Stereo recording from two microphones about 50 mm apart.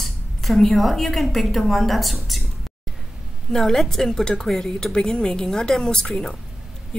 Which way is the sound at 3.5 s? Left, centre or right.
Centre.